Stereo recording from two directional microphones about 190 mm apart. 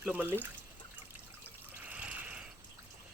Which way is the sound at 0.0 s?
10° right (ahead or behind).